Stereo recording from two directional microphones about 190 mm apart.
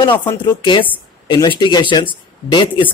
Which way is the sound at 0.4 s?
25° left (ahead or behind).